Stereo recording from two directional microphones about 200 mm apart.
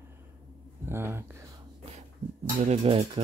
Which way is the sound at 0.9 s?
10° right (ahead or behind).